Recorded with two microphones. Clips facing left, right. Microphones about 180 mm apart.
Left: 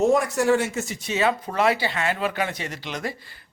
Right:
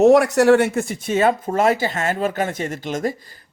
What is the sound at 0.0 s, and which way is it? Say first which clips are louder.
Speech: right 7 dB; 75° right (ahead or behind).